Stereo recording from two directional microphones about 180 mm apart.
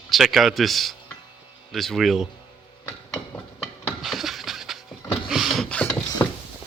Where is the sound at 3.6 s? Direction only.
Centre (ahead or behind).